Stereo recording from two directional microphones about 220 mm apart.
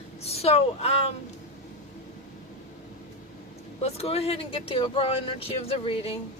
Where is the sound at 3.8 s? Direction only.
30° left (ahead or behind).